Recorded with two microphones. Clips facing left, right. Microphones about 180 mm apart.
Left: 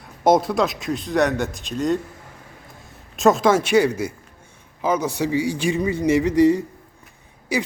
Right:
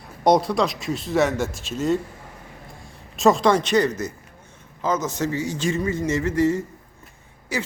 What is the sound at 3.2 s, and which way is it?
A man's voice, centre (ahead or behind).